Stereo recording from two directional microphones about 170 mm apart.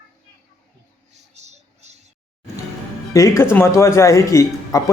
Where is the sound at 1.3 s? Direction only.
40° right (ahead or behind).